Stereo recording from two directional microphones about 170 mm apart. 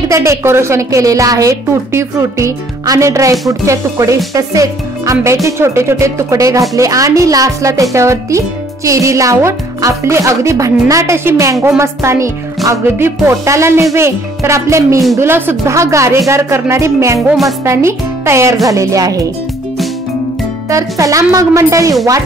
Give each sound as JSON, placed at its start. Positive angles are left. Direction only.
{"t": 0.1, "sound": "a woman's voice", "side_deg": -15}
{"t": 17.3, "sound": "speech", "side_deg": 0}
{"t": 17.6, "sound": "a woman's voice", "side_deg": -15}
{"t": 20.7, "sound": "speech", "side_deg": -20}